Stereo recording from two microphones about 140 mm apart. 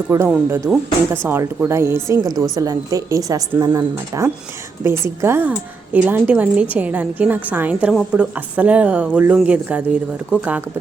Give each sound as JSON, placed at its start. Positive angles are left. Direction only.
{"t": 0.1, "sound": "speech", "side_deg": -20}